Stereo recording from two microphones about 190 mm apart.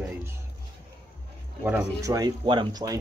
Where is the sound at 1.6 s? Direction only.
10° right (ahead or behind).